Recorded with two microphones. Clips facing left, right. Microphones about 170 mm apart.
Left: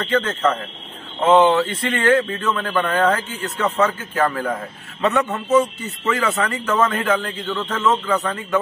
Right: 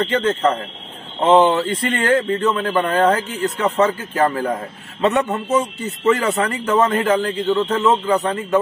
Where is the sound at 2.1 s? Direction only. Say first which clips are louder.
Right 3 dB; 25° right (ahead or behind).